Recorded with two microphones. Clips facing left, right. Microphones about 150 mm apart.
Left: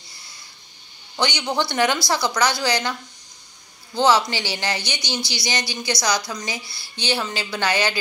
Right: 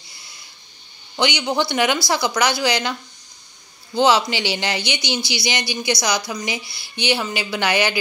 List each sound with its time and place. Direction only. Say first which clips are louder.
1.1 s a woman's voice: right 3 dB; 10° right (ahead or behind)